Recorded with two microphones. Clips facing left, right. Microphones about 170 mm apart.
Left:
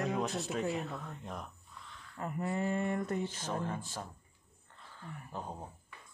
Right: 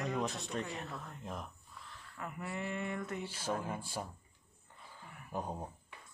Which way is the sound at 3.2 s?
10° right (ahead or behind).